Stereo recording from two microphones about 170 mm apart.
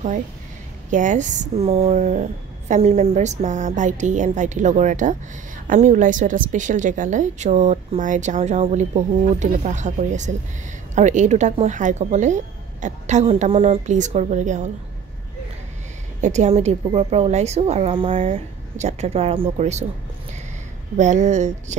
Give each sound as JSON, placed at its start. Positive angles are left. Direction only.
{"t": 0.8, "sound": "a woman's voice", "side_deg": -45}
{"t": 16.2, "sound": "a woman's voice", "side_deg": -45}
{"t": 18.3, "sound": "a woman's voice", "side_deg": -40}
{"t": 21.0, "sound": "a woman's voice", "side_deg": -45}